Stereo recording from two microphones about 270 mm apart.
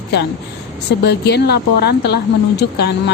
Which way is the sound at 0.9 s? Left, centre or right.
Left.